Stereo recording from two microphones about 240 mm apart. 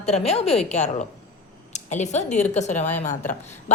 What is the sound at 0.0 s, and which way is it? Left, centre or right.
A woman's voice, left.